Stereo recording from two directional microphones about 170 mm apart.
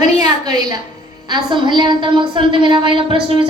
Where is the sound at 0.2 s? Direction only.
20° right (ahead or behind).